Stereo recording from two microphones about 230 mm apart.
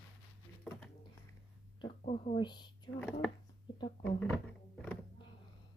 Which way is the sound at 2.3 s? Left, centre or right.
Centre.